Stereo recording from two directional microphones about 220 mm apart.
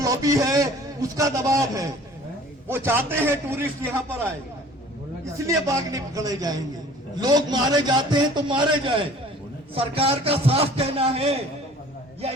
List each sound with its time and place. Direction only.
0.0 s a man's voice: 15° right (ahead or behind)
5.5 s a man's voice: 15° right (ahead or behind)